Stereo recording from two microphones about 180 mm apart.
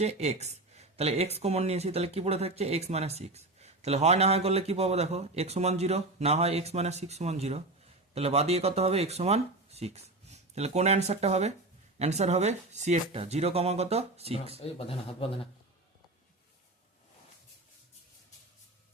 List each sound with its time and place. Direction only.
0.0 s speech: 35° right (ahead or behind)
14.6 s speech: 30° left (ahead or behind)